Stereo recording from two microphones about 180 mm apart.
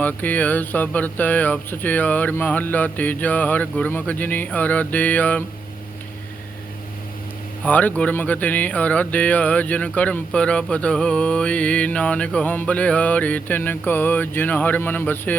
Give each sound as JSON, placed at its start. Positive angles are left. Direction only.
{"t": 0.0, "sound": "speech", "side_deg": 10}
{"t": 7.6, "sound": "speech", "side_deg": 10}